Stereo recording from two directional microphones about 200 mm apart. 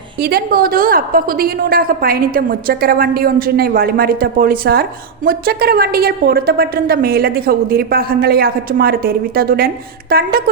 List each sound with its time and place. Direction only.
0.2 s a woman's voice: 50° right (ahead or behind)